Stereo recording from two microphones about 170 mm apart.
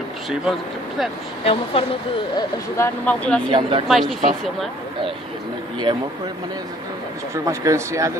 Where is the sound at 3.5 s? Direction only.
30° right (ahead or behind).